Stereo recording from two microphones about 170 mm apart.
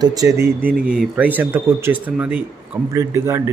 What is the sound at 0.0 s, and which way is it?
Speech, 20° right (ahead or behind).